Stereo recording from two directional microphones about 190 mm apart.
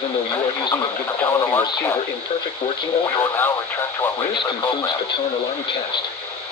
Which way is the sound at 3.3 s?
15° left (ahead or behind).